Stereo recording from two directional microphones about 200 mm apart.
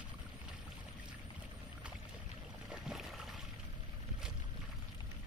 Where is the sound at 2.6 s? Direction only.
Centre (ahead or behind).